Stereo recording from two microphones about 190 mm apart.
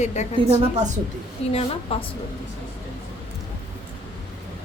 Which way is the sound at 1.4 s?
30° left (ahead or behind).